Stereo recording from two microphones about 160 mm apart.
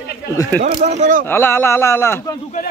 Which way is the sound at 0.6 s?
45° right (ahead or behind).